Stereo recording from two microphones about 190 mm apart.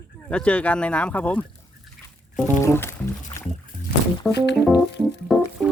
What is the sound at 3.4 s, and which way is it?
Boat, 15° left (ahead or behind).